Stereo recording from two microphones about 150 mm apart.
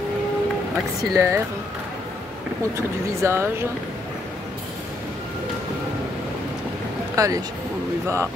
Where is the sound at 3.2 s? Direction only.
15° right (ahead or behind).